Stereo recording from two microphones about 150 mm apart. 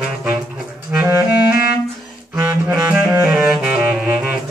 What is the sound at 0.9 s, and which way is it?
Clarinet, 15° right (ahead or behind).